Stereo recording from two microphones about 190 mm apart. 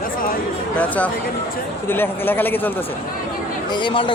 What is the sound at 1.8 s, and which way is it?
Speech, 10° left (ahead or behind).